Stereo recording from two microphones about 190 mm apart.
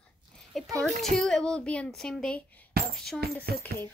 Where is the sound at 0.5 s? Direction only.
Centre (ahead or behind).